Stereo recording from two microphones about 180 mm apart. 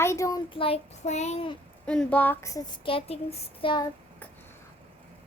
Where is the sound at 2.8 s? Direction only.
30° left (ahead or behind).